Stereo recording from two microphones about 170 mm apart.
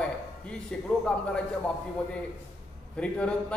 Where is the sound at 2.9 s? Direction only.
5° left (ahead or behind).